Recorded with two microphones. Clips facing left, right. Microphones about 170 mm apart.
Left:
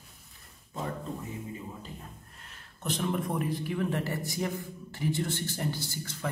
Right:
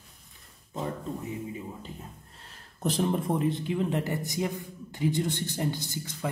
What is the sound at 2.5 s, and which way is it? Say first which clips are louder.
Speech: right 6 dB; 35° right (ahead or behind).